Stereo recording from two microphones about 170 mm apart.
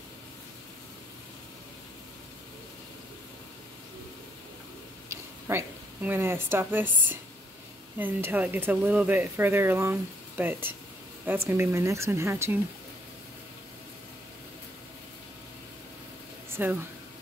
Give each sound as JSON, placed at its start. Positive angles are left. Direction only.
{"t": 5.1, "sound": "a sound", "side_deg": -15}
{"t": 8.0, "sound": "speech", "side_deg": -10}
{"t": 16.6, "sound": "speech", "side_deg": -10}